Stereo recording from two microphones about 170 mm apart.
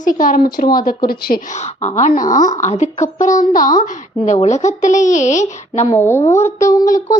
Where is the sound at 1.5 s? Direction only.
40° left (ahead or behind).